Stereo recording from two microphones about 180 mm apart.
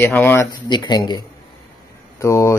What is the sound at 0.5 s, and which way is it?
Speech, 25° left (ahead or behind).